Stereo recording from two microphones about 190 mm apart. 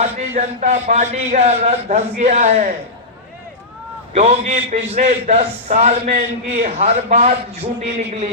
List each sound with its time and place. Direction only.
0.0 s a man's voice: 40° right (ahead or behind)
4.1 s a man's voice: 35° right (ahead or behind)